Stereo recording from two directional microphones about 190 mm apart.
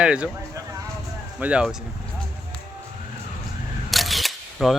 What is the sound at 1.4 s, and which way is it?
Speech, 5° right (ahead or behind).